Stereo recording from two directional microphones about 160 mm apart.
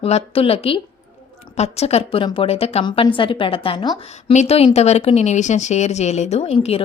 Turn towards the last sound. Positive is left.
turn(degrees=40)  # may be behind; listen again after turning